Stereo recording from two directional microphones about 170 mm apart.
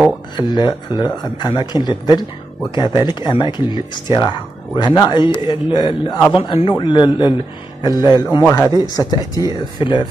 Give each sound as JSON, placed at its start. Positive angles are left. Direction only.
{"t": 0.4, "sound": "a man's voice", "side_deg": 25}